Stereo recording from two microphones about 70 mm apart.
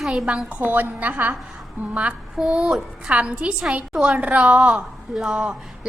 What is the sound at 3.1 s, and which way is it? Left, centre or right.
A woman's voice, centre.